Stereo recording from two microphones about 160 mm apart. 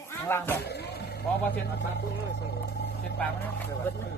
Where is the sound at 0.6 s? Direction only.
90° left.